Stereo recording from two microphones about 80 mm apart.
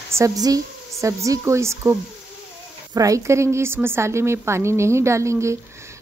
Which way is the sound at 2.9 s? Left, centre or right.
Right.